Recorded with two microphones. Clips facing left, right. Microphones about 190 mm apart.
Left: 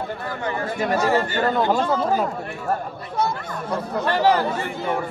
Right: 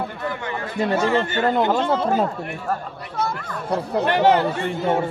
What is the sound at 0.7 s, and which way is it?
Speech, 25° right (ahead or behind).